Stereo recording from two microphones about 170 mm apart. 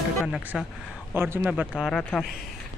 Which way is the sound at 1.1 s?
10° right (ahead or behind).